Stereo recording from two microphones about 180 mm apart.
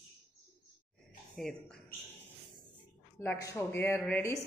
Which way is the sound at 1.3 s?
5° left (ahead or behind).